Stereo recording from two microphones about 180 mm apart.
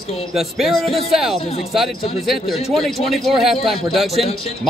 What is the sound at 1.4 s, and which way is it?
Speech, 35° left (ahead or behind).